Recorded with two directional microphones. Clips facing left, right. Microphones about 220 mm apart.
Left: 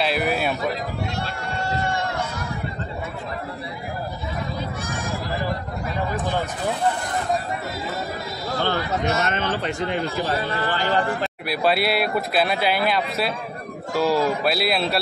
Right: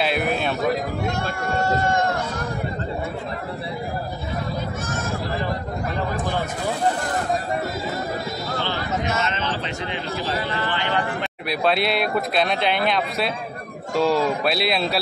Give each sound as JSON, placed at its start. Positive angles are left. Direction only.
{"t": 0.0, "sound": "speech", "side_deg": 0}
{"t": 1.0, "sound": "run", "side_deg": -50}
{"t": 9.2, "sound": "speech", "side_deg": 50}
{"t": 10.6, "sound": "speech", "side_deg": 40}
{"t": 11.4, "sound": "speech", "side_deg": 5}